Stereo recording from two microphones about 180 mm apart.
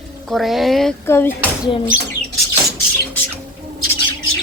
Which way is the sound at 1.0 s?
10° left (ahead or behind).